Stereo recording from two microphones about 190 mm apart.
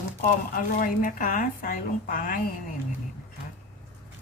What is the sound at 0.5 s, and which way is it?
Speech, 45° left (ahead or behind).